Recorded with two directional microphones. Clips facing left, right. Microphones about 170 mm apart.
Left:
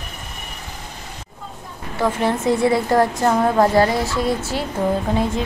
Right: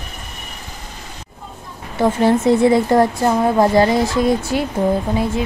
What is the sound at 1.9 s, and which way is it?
A woman's voice, 20° right (ahead or behind).